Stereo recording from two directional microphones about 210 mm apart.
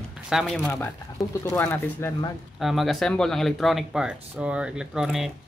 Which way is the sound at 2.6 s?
Centre (ahead or behind).